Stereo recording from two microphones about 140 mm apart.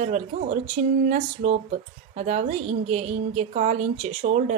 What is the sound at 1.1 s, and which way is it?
A woman's voice, 55° right (ahead or behind).